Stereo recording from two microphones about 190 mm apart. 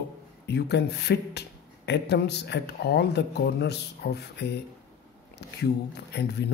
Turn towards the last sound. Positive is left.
turn(degrees=60)  # may be behind; listen again after turning